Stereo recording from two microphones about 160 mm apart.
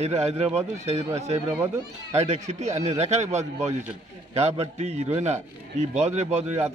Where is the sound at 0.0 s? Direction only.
45° right (ahead or behind).